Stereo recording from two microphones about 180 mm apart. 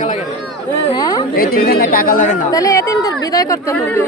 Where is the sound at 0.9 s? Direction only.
20° left (ahead or behind).